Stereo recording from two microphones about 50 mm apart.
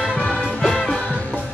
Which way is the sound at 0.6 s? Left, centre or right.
Centre.